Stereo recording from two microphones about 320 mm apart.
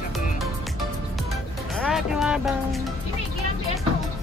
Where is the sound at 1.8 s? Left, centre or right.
Centre.